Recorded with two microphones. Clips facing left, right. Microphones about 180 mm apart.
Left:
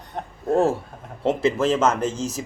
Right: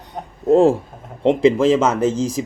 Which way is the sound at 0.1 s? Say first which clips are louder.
Right 7 dB; 15° right (ahead or behind).